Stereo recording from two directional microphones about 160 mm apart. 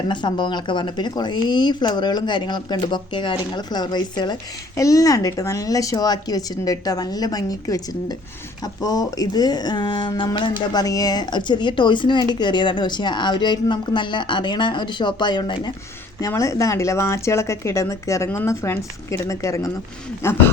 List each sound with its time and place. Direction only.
0.1 s speech: 30° left (ahead or behind)